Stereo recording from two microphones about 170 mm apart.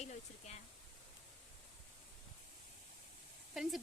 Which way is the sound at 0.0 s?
40° left (ahead or behind).